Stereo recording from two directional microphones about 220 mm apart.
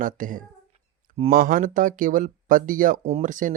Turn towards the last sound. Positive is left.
turn(degrees=-35)  # may be behind; listen again after turning